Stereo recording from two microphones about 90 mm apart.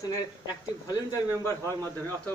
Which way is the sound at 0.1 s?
45° left (ahead or behind).